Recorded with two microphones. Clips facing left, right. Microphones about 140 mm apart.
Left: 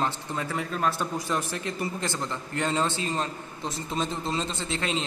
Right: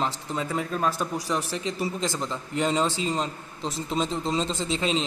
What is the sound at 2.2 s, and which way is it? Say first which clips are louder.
Speech: right 4 dB; centre (ahead or behind).